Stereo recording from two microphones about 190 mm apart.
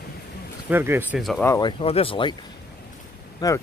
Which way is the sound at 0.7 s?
10° right (ahead or behind).